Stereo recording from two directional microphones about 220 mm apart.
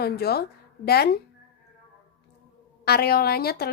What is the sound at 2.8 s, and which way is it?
Speech, 45° left (ahead or behind).